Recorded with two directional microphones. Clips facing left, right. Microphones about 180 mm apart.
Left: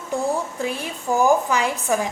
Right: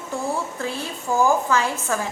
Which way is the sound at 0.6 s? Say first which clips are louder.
Left 2 dB; 15° left (ahead or behind).